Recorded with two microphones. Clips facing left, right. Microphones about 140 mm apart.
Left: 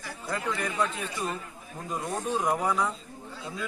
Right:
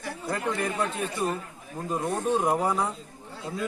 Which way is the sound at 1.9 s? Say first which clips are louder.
Right 5 dB; 30° right (ahead or behind).